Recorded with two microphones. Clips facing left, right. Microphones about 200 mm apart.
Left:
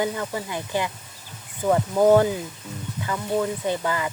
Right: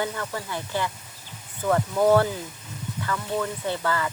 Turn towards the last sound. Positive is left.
turn(degrees=15)  # may be behind; listen again after turning